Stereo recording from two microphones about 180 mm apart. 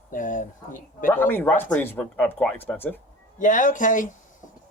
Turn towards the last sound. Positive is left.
turn(degrees=45)  # may be behind; listen again after turning